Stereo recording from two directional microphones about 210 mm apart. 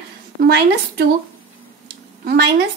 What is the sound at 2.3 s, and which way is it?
Speech, 50° right (ahead or behind).